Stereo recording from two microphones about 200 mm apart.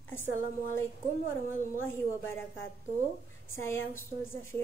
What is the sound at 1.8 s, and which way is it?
Speech, 10° left (ahead or behind).